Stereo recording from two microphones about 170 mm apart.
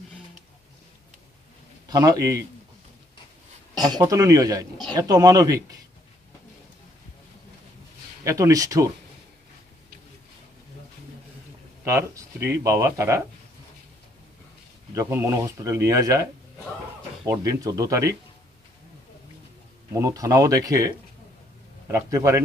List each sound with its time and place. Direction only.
1.9 s speech: 20° right (ahead or behind)
3.7 s speech: 20° right (ahead or behind)
8.2 s speech: 20° right (ahead or behind)
11.8 s speech: 15° right (ahead or behind)
15.0 s speech: 15° right (ahead or behind)
19.9 s speech: 20° right (ahead or behind)